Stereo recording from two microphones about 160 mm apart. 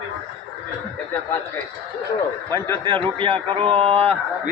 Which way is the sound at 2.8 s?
30° right (ahead or behind).